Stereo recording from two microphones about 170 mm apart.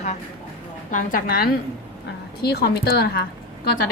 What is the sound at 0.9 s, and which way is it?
Speech, 50° left (ahead or behind).